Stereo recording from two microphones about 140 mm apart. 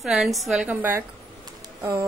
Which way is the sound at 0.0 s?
5° right (ahead or behind).